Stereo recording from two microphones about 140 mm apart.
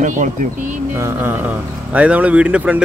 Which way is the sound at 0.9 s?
15° right (ahead or behind).